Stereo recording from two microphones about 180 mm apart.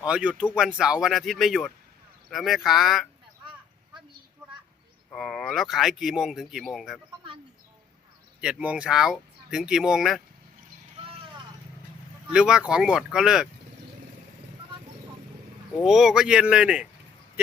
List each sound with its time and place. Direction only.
0.0 s speech: 5° right (ahead or behind)
4.4 s a sound: 15° right (ahead or behind)
5.1 s speech: centre (ahead or behind)
8.4 s speech: 5° right (ahead or behind)
12.3 s speech: 5° right (ahead or behind)
15.8 s speech: centre (ahead or behind)